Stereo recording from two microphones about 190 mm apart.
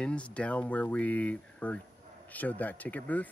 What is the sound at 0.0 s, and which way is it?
Speech, 5° left (ahead or behind).